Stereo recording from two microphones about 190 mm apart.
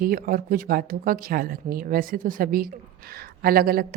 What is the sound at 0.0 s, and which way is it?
A woman's voice, 50° right (ahead or behind).